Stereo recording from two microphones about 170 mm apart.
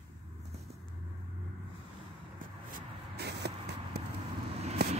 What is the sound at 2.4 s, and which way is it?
Vehicle, 55° right (ahead or behind).